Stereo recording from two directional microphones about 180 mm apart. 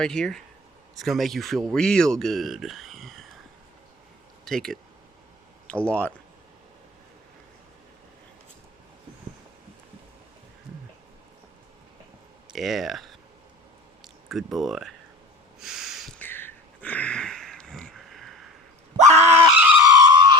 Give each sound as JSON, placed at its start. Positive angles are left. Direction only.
{"t": 0.0, "sound": "speech", "side_deg": 5}
{"t": 4.4, "sound": "speech", "side_deg": 0}
{"t": 12.5, "sound": "speech", "side_deg": 0}
{"t": 14.3, "sound": "speech", "side_deg": 0}
{"t": 15.6, "sound": "a sound", "side_deg": 0}
{"t": 18.9, "sound": "screaming", "side_deg": -40}
{"t": 19.8, "sound": "skidding", "side_deg": -20}